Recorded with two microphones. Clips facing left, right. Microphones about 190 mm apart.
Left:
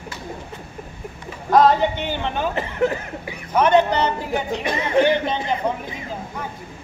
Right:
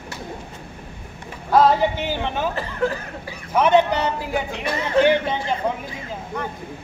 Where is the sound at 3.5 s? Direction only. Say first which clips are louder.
Even; 10° right (ahead or behind).